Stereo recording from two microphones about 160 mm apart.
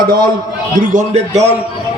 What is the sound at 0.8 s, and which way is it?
Speech, 50° right (ahead or behind).